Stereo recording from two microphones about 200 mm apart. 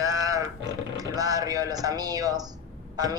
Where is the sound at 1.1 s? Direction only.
15° right (ahead or behind).